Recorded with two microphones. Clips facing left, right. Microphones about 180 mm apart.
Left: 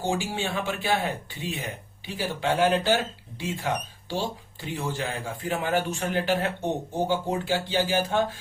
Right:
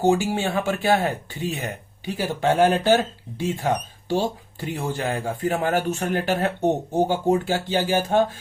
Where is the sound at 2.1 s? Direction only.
45° right (ahead or behind).